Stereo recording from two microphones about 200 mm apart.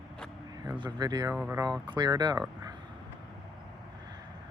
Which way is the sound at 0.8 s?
20° right (ahead or behind).